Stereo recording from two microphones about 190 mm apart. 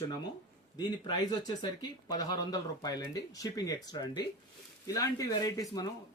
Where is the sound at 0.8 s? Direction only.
20° left (ahead or behind).